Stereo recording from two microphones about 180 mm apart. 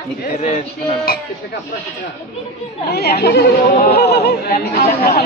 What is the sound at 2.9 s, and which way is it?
Speech, 60° left (ahead or behind).